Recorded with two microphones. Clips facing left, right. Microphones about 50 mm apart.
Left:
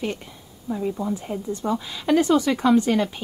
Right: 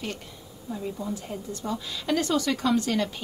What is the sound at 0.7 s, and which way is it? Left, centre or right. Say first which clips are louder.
A woman's voice: left 6 dB; centre.